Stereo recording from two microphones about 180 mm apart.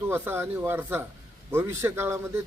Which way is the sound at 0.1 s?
10° right (ahead or behind).